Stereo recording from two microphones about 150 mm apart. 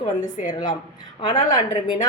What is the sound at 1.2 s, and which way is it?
Speech, 30° left (ahead or behind).